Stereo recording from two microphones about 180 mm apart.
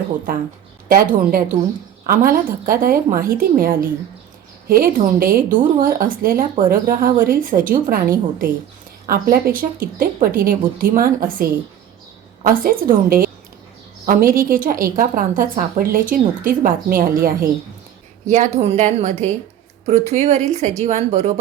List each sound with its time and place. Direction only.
1.1 s a woman's voice: 55° right (ahead or behind)
18.3 s a woman's voice: 40° right (ahead or behind)